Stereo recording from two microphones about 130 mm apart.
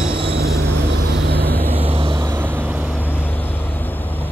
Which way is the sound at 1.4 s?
15° left (ahead or behind).